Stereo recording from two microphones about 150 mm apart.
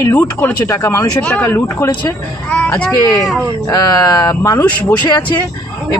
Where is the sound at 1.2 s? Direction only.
10° left (ahead or behind).